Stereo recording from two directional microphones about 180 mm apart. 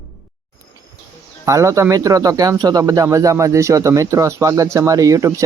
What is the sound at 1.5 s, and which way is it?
Speech, 15° right (ahead or behind).